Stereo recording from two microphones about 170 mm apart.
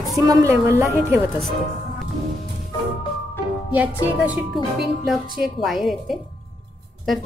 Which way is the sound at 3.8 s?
10° right (ahead or behind).